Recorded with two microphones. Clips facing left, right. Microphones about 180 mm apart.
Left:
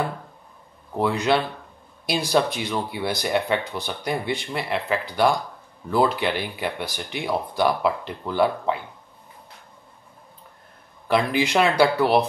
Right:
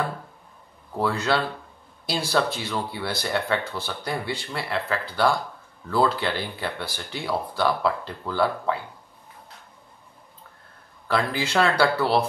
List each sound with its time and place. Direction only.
0.9 s speech: 15° left (ahead or behind)
11.1 s speech: 20° left (ahead or behind)